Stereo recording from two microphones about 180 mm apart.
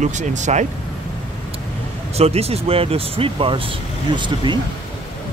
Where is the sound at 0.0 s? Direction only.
40° right (ahead or behind).